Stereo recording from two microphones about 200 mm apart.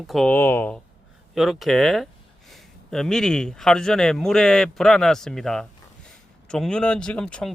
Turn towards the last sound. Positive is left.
turn(degrees=5)  # may be behind; listen again after turning